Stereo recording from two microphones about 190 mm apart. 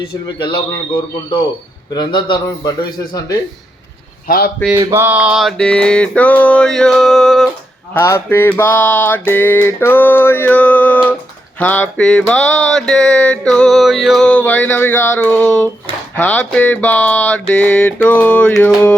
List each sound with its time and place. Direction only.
0.0 s a man's voice: 25° left (ahead or behind)
1.9 s a man's voice: 25° left (ahead or behind)
4.3 s a man's voice: 50° left (ahead or behind)
4.7 s music: 15° right (ahead or behind)
7.9 s mantra: 15° left (ahead or behind)